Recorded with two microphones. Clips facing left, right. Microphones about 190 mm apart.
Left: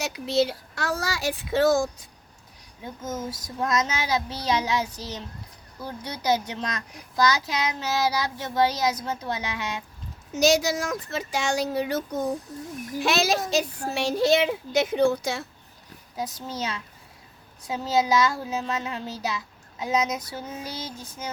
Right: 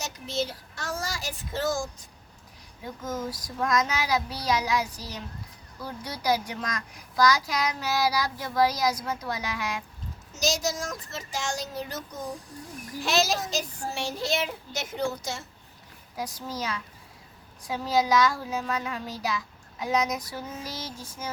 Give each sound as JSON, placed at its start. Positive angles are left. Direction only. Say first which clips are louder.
{"t": 0.0, "sound": "a child's voice", "louder": "left 7 dB", "side_deg": 65}
{"t": 2.8, "sound": "a child's voice", "louder": "even", "side_deg": 20}
{"t": 10.3, "sound": "speech", "louder": "left 7 dB", "side_deg": 65}
{"t": 16.1, "sound": "a child's voice", "louder": "left 2 dB", "side_deg": 25}